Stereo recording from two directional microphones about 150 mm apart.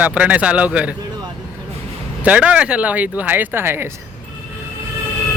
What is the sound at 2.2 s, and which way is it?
Speech, 10° right (ahead or behind).